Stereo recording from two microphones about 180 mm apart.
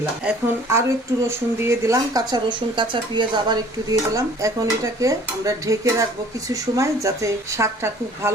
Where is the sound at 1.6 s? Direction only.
15° right (ahead or behind).